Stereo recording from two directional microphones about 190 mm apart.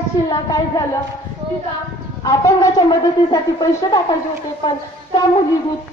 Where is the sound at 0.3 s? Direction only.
20° left (ahead or behind).